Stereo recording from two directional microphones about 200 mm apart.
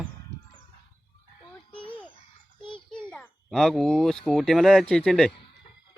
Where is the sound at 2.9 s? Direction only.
5° left (ahead or behind).